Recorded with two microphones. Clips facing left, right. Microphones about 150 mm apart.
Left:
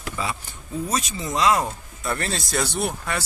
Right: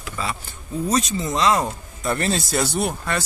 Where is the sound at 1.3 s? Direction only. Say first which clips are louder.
Even; 10° left (ahead or behind).